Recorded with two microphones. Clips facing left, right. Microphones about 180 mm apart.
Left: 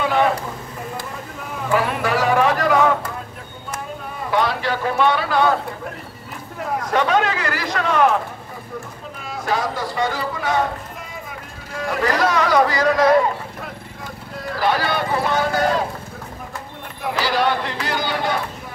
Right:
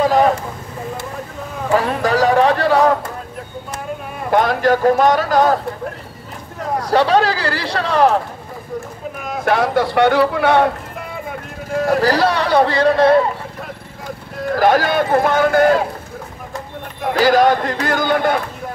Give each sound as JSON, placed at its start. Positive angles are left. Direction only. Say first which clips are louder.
{"t": 0.0, "sound": "a sound", "louder": "right 5 dB", "side_deg": -40}
{"t": 1.7, "sound": "speech", "louder": "right 4 dB", "side_deg": -35}
{"t": 4.3, "sound": "a man's voice", "louder": "right 6 dB", "side_deg": -50}
{"t": 6.8, "sound": "speech", "louder": "right 5 dB", "side_deg": -35}
{"t": 9.4, "sound": "speech", "louder": "right 7 dB", "side_deg": -65}
{"t": 11.7, "sound": "speech", "louder": "right 6 dB", "side_deg": -40}
{"t": 14.5, "sound": "a man's voice", "louder": "right 6 dB", "side_deg": -45}
{"t": 17.1, "sound": "a man's voice", "louder": "right 7 dB", "side_deg": -45}